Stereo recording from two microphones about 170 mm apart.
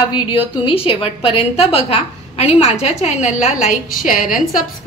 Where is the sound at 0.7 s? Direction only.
30° left (ahead or behind); by 4.4 s 50° left (ahead or behind).